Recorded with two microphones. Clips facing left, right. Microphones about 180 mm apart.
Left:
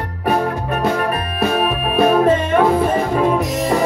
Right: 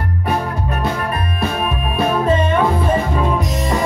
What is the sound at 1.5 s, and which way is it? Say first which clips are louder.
Music: left 4 dB; 60° left (ahead or behind).